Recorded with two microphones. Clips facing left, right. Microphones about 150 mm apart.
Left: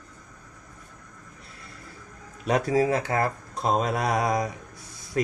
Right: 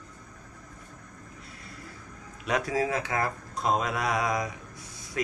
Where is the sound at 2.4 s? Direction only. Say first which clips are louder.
Left 5 dB; 35° left (ahead or behind).